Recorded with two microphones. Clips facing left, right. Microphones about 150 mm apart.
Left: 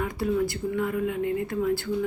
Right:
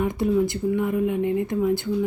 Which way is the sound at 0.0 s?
20° right (ahead or behind).